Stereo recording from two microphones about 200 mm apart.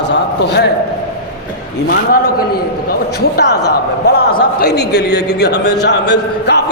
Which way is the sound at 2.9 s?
50° left (ahead or behind).